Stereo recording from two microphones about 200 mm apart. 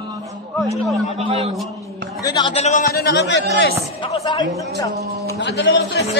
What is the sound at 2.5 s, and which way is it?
Speech, 35° left (ahead or behind).